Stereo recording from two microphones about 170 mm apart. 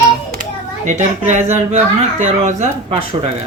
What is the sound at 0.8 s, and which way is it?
Speech, 45° right (ahead or behind).